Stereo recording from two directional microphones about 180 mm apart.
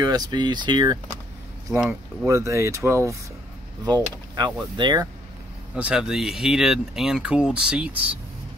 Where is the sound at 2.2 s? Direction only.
15° right (ahead or behind).